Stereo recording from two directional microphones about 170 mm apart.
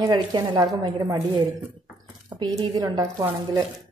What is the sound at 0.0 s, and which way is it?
Speech, 25° right (ahead or behind).